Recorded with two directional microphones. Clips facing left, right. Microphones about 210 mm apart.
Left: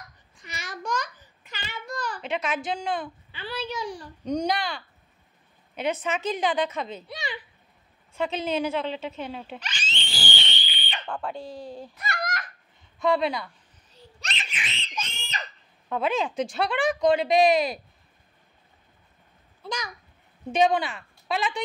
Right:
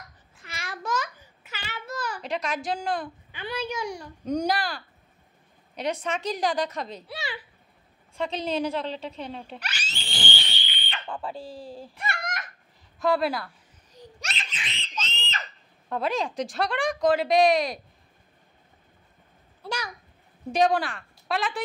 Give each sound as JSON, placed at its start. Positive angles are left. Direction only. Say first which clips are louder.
{"t": 0.4, "sound": "babbling", "louder": "even", "side_deg": 0}
{"t": 2.3, "sound": "speech", "louder": "left 1 dB", "side_deg": 0}
{"t": 3.3, "sound": "a child's voice", "louder": "right 2 dB", "side_deg": -15}
{"t": 9.6, "sound": "speech", "louder": "left 1 dB", "side_deg": -10}
{"t": 11.1, "sound": "speech", "louder": "left 2 dB", "side_deg": 0}
{"t": 11.9, "sound": "a sound", "louder": "left 1 dB", "side_deg": -30}
{"t": 13.0, "sound": "speech", "louder": "even", "side_deg": 0}
{"t": 13.9, "sound": "laughter", "louder": "right 2 dB", "side_deg": -15}
{"t": 14.4, "sound": "a sound", "louder": "left 1 dB", "side_deg": 15}
{"t": 15.9, "sound": "speech", "louder": "left 1 dB", "side_deg": 0}
{"t": 19.6, "sound": "a child's voice", "louder": "even", "side_deg": -10}